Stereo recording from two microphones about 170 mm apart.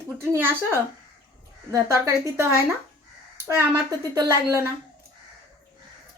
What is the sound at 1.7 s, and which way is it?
Speech, 15° right (ahead or behind).